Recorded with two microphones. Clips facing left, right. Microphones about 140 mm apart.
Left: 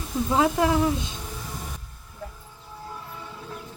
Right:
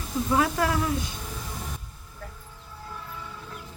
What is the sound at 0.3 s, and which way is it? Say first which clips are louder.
Speech: left 3 dB; 20° left (ahead or behind).